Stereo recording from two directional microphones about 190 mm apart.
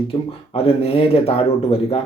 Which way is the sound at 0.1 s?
30° left (ahead or behind).